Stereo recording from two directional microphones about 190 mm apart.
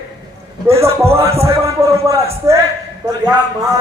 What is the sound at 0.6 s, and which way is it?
Speech, 15° right (ahead or behind).